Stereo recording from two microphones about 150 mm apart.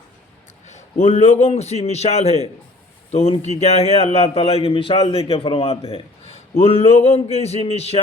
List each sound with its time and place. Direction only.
1.0 s a man's voice: 45° left (ahead or behind)